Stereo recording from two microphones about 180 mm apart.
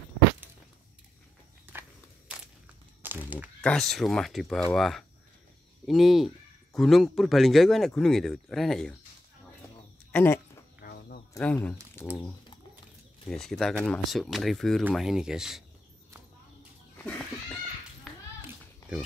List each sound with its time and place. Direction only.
1.7 s crackle: 10° right (ahead or behind)
3.0 s a sound: 10° right (ahead or behind)
3.6 s speech: centre (ahead or behind)
10.1 s speech: 15° left (ahead or behind)
10.8 s a sound: 60° left (ahead or behind)
11.3 s speech: 10° left (ahead or behind)
13.3 s speech: centre (ahead or behind)
18.1 s clapping: centre (ahead or behind)
18.5 s a sound: 5° right (ahead or behind)